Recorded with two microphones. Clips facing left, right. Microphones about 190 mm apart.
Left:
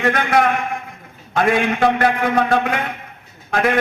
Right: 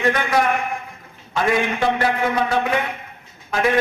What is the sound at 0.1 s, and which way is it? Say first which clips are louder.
A man's voice: left 4 dB; 60° left (ahead or behind).